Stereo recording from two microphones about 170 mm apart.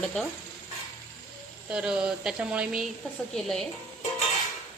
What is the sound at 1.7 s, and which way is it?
A woman's voice, 5° right (ahead or behind).